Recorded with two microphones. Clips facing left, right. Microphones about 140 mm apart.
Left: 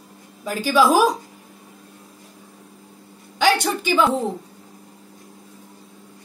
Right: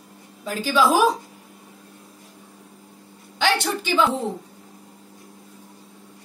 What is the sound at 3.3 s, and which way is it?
Speech, 10° left (ahead or behind).